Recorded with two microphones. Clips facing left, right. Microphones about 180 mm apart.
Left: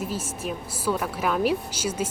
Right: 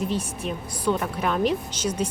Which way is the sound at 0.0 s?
5° left (ahead or behind).